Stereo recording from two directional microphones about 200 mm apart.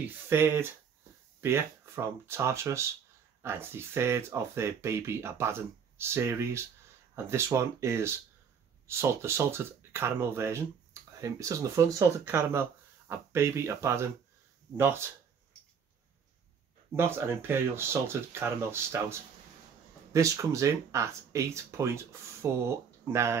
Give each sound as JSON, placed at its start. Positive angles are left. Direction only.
{"t": 0.0, "sound": "speech", "side_deg": -10}
{"t": 16.9, "sound": "speech", "side_deg": -10}